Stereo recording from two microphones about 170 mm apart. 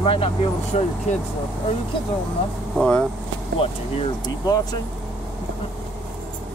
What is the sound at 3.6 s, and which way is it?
Speech, 35° left (ahead or behind).